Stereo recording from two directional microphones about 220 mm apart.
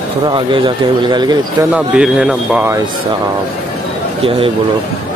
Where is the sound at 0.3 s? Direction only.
20° right (ahead or behind).